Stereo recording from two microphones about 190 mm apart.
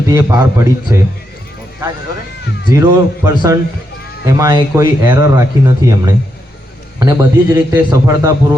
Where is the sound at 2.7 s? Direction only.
15° right (ahead or behind).